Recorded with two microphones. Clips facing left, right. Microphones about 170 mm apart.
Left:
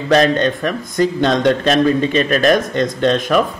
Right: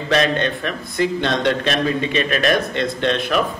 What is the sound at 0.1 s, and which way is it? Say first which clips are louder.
Speech: left 5 dB; 40° left (ahead or behind).